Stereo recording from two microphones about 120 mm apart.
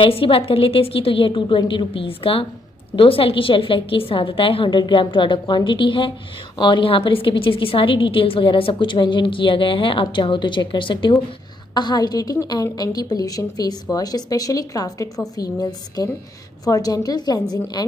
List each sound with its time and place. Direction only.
0.0 s a woman's voice: 50° left (ahead or behind)